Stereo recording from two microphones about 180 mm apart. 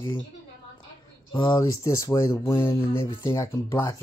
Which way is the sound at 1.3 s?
20° left (ahead or behind).